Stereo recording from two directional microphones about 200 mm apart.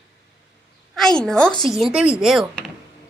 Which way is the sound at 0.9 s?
Centre (ahead or behind).